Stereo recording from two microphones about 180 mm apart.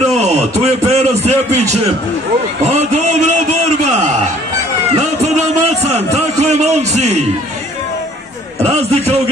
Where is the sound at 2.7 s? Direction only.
40° right (ahead or behind).